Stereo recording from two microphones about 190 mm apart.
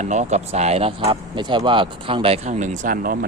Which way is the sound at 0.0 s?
40° right (ahead or behind).